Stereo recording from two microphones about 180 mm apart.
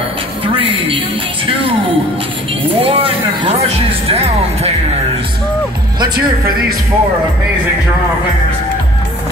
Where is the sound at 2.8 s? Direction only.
30° right (ahead or behind).